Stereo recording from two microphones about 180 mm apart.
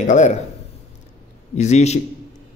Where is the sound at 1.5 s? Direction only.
40° left (ahead or behind).